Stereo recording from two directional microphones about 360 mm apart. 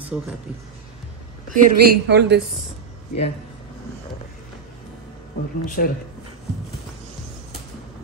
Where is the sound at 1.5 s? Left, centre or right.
Right.